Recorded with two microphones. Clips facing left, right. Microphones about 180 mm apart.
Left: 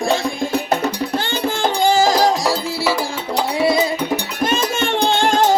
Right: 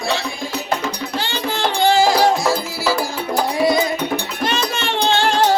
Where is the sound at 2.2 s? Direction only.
35° left (ahead or behind).